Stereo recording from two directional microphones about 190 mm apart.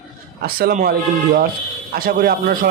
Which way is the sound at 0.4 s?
50° right (ahead or behind).